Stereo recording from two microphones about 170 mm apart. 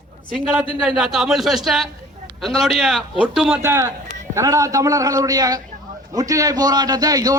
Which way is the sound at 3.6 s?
15° right (ahead or behind).